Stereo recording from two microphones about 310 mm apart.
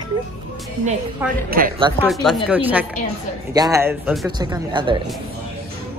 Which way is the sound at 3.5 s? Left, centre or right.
Centre.